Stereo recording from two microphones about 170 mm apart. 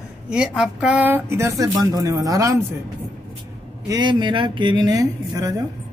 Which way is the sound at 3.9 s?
25° right (ahead or behind).